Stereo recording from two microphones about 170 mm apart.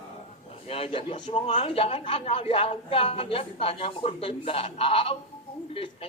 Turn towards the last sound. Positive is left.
turn(degrees=35)  # may be behind; listen again after turning